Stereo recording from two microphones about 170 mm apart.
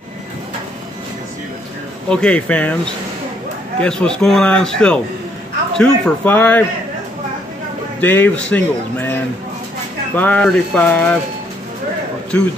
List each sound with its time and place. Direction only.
2.0 s a man's voice: 5° left (ahead or behind)
8.0 s speech: 10° left (ahead or behind)